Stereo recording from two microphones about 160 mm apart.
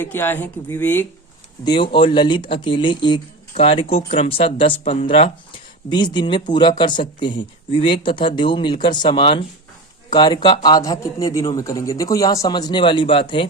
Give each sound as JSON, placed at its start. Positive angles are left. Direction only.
{"t": 0.0, "sound": "speech", "side_deg": 15}
{"t": 1.6, "sound": "speech", "side_deg": 30}